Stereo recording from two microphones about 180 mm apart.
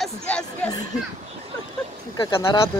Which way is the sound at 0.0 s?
5° left (ahead or behind).